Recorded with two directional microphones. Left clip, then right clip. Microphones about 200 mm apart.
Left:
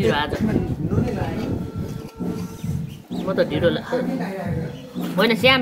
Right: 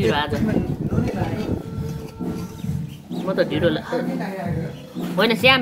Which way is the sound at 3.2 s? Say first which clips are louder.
Even; centre (ahead or behind).